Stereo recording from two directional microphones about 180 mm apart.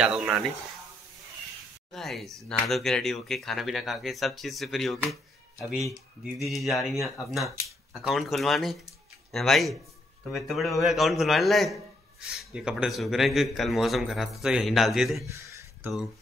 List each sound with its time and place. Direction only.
0.0 s a man's voice: 5° right (ahead or behind)
1.9 s a man's voice: centre (ahead or behind)
15.2 s a sound: 15° right (ahead or behind)